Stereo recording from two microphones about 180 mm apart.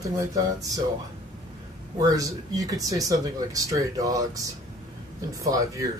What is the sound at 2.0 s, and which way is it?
Speech, 20° right (ahead or behind).